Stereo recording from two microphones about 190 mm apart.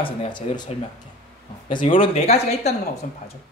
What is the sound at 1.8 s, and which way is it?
Speech, 30° left (ahead or behind).